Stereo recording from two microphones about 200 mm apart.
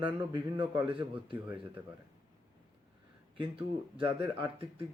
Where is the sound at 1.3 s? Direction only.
10° right (ahead or behind).